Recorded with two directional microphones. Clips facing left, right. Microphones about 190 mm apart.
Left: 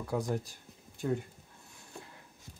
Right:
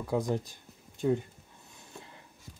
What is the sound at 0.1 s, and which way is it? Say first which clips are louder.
Speech: right 3 dB; 20° right (ahead or behind).